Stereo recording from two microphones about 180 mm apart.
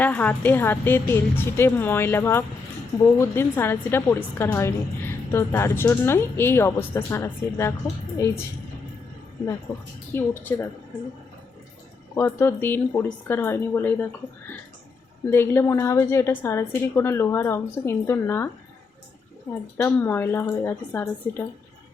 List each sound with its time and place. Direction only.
0.0 s a woman's voice: 10° left (ahead or behind)
10.1 s a woman's voice: 10° left (ahead or behind)
12.1 s a woman's voice: 15° left (ahead or behind)
19.7 s a woman's voice: 15° left (ahead or behind)